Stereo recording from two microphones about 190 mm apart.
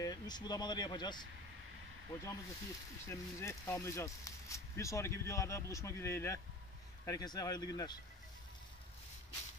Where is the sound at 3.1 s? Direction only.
15° left (ahead or behind).